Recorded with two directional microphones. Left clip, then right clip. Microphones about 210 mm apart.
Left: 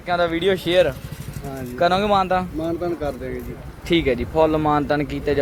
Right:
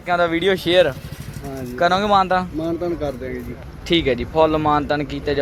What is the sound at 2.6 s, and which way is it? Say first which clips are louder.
Speech: right 1 dB; 35° right (ahead or behind).